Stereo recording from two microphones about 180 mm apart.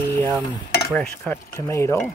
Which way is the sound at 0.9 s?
5° left (ahead or behind).